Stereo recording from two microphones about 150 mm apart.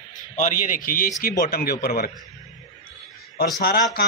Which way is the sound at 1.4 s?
85° left.